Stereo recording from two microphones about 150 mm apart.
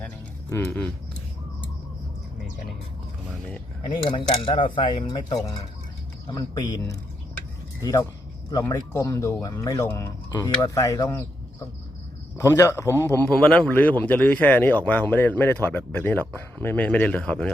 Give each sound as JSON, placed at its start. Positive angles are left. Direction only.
{"t": 0.5, "sound": "speech", "side_deg": 20}
{"t": 3.9, "sound": "speech", "side_deg": 35}
{"t": 12.4, "sound": "a man's voice", "side_deg": 20}